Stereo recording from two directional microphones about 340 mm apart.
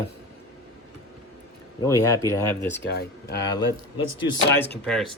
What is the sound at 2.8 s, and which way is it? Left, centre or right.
Speech, left.